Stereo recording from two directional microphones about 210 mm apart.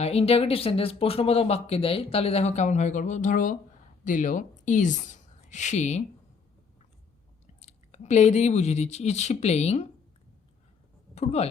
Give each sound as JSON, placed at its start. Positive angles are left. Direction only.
{"t": 0.0, "sound": "a woman's voice", "side_deg": 30}
{"t": 7.6, "sound": "speech", "side_deg": 30}
{"t": 11.1, "sound": "speech", "side_deg": 30}